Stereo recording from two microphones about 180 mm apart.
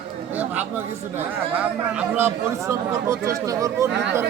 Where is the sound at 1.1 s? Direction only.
10° right (ahead or behind).